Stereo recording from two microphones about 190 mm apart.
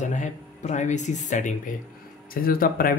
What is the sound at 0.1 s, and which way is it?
Speech, 40° left (ahead or behind).